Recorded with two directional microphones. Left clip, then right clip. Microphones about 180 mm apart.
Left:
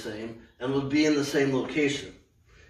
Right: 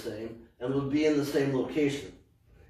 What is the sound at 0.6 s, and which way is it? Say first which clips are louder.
A man's voice: left 3 dB; 20° left (ahead or behind).